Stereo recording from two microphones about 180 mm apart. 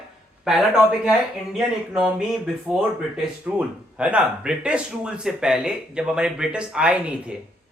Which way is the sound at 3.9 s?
5° right (ahead or behind).